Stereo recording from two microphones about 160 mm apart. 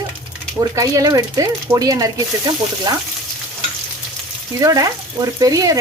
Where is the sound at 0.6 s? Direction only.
20° right (ahead or behind).